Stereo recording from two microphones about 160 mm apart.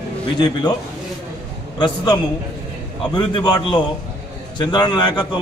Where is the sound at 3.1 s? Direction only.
30° left (ahead or behind).